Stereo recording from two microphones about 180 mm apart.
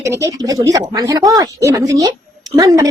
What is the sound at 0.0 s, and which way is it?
A woman's voice, 15° right (ahead or behind).